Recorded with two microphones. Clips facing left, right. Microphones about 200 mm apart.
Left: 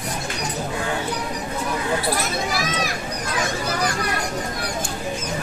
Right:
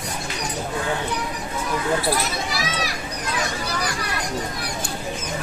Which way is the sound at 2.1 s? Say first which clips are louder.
Left 1 dB; 50° left (ahead or behind).